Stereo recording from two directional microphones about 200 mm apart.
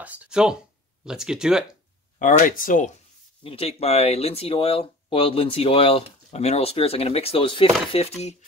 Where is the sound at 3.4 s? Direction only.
30° left (ahead or behind).